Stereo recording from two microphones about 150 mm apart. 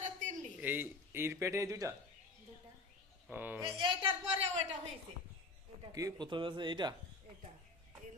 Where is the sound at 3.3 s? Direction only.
10° right (ahead or behind).